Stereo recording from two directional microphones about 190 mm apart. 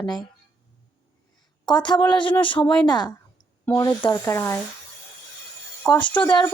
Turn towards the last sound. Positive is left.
turn(degrees=25)  # may be behind; listen again after turning